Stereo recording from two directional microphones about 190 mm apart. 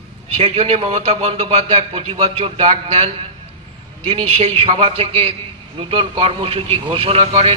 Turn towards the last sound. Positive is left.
turn(degrees=-30)  # may be behind; listen again after turning